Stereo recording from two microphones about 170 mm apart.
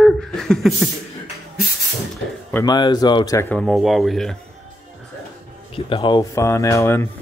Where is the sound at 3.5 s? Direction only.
Centre (ahead or behind).